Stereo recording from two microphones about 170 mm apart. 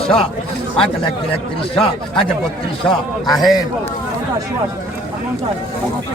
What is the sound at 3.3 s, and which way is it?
Speech, centre (ahead or behind).